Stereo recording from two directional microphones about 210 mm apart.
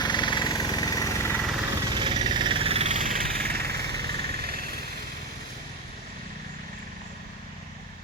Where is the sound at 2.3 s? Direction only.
25° right (ahead or behind); by 4.8 s 45° right (ahead or behind).